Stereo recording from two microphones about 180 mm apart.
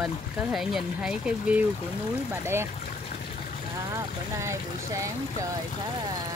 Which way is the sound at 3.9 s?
15° right (ahead or behind).